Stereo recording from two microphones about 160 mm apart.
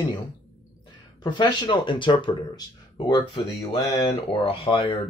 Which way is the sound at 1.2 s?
30° left (ahead or behind).